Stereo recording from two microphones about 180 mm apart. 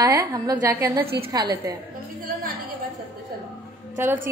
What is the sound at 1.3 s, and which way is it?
Speech, 20° right (ahead or behind).